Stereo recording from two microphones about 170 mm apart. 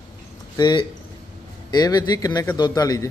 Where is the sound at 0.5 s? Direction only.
25° left (ahead or behind).